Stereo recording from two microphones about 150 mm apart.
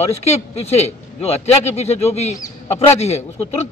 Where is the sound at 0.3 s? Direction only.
45° left (ahead or behind).